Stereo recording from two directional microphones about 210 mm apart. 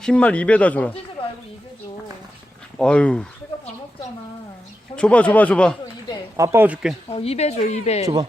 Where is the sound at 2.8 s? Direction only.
5° left (ahead or behind).